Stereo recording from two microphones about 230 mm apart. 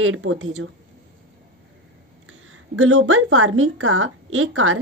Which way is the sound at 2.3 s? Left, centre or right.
Right.